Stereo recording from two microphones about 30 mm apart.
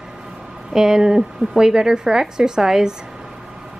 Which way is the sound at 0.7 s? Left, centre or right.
Centre.